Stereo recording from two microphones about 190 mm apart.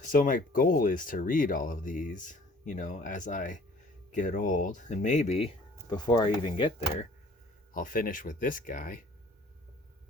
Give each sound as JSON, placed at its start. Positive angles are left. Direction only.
{"t": 0.0, "sound": "speech", "side_deg": 45}
{"t": 5.9, "sound": "speech", "side_deg": 20}
{"t": 6.4, "sound": "speech", "side_deg": 30}
{"t": 7.7, "sound": "speech", "side_deg": 45}